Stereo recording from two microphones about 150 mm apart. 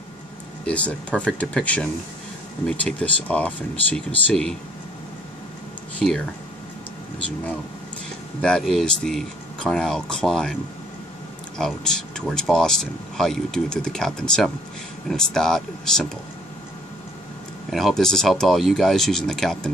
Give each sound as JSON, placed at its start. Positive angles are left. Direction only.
{"t": 0.7, "sound": "speech", "side_deg": 10}
{"t": 5.9, "sound": "speech", "side_deg": 5}
{"t": 8.4, "sound": "speech", "side_deg": 5}
{"t": 17.6, "sound": "speech", "side_deg": 0}